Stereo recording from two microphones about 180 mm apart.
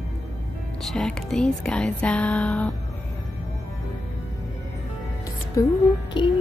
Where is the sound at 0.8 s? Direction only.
5° left (ahead or behind).